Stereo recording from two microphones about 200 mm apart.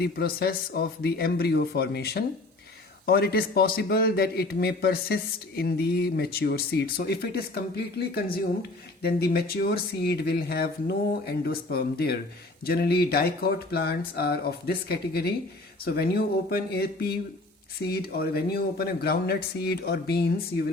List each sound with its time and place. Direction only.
0.0 s a man's voice: 50° left (ahead or behind)